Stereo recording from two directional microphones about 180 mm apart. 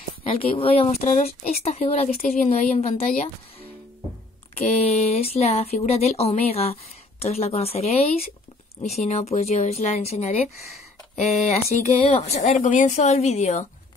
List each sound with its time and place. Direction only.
0.4 s speech: 30° left (ahead or behind)
2.2 s speech: 45° left (ahead or behind)
4.6 s speech: 35° left (ahead or behind)